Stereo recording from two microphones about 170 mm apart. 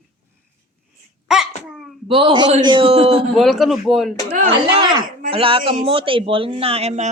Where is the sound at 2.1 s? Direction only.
30° right (ahead or behind).